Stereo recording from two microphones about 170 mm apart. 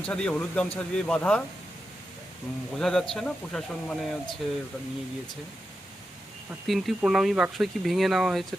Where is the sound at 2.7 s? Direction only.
Centre (ahead or behind).